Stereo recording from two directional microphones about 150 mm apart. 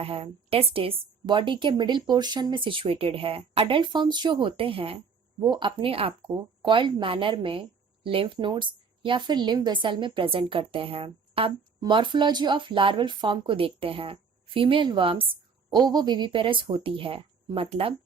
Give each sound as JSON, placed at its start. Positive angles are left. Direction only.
{"t": 0.0, "sound": "speech", "side_deg": -40}